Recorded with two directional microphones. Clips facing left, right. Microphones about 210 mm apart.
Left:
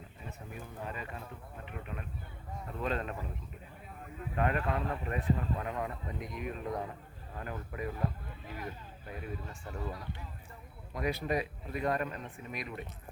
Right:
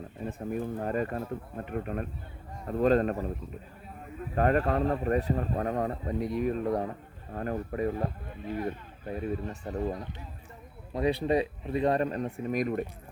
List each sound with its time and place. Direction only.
0.2 s speech: 50° right (ahead or behind)
4.4 s speech: 40° right (ahead or behind)
9.9 s speech: 20° right (ahead or behind); by 12.8 s 45° right (ahead or behind)